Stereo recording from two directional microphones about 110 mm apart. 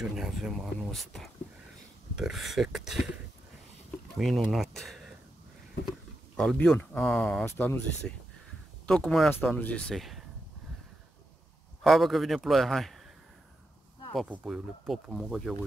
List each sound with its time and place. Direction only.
0.0 s a man's voice: 5° right (ahead or behind)
4.2 s speech: centre (ahead or behind)
7.4 s speech: 20° left (ahead or behind)
8.8 s a man's voice: 5° left (ahead or behind)
11.8 s a man's voice: centre (ahead or behind)
14.3 s a man's voice: 5° right (ahead or behind)